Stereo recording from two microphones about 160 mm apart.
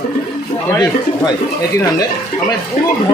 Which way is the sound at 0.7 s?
25° left (ahead or behind).